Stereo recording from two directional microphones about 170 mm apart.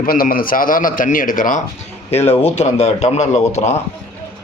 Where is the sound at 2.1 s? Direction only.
35° left (ahead or behind).